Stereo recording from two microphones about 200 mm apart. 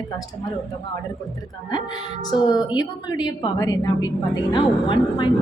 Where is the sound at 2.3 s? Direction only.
20° left (ahead or behind).